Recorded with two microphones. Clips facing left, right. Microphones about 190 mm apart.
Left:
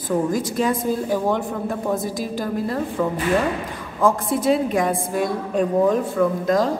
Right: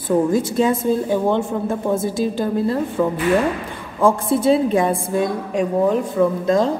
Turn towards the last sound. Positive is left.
turn(degrees=-25)  # may be behind; listen again after turning